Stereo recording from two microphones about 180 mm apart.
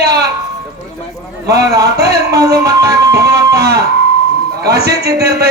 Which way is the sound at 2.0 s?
60° right (ahead or behind).